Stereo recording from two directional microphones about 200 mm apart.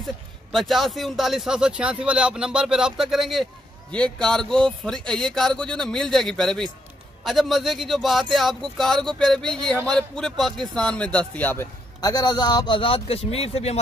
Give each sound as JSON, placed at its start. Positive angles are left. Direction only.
{"t": 0.0, "sound": "a man's voice", "side_deg": 0}